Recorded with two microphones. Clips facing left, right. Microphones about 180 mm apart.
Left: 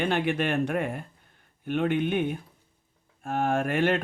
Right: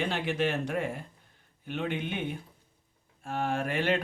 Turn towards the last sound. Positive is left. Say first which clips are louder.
# left 4 dB
turn(degrees=50)  # may be behind; listen again after turning